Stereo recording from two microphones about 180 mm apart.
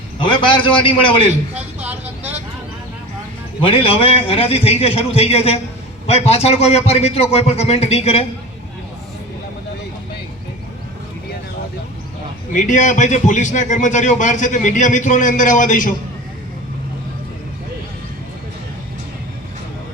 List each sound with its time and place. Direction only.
0.2 s a man's voice: 25° left (ahead or behind)
1.8 s vehicle: 10° right (ahead or behind)
3.6 s a man's voice: 30° left (ahead or behind)
12.5 s a man's voice: 45° left (ahead or behind)